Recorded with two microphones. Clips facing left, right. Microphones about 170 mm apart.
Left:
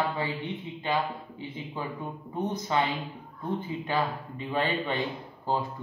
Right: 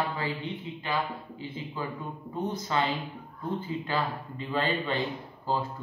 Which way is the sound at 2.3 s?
20° left (ahead or behind).